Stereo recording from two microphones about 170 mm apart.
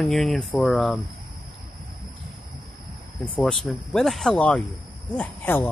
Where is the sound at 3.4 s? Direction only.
5° left (ahead or behind).